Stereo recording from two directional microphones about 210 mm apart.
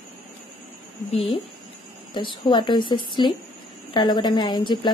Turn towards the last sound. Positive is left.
turn(degrees=20)  # may be behind; listen again after turning